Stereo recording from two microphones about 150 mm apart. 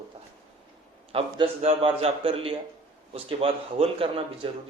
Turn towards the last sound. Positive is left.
turn(degrees=-40)  # may be behind; listen again after turning